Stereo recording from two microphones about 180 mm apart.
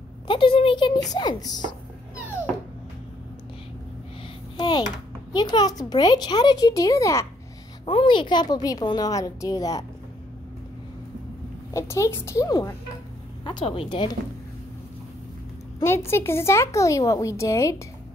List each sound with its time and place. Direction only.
0.3 s a sound: 30° left (ahead or behind)
1.1 s speech: 20° left (ahead or behind)
2.2 s music: 15° left (ahead or behind)
4.6 s speech: 25° left (ahead or behind)
7.8 s speech: 30° left (ahead or behind)
11.7 s speech: 15° left (ahead or behind)
15.8 s speech: 15° left (ahead or behind)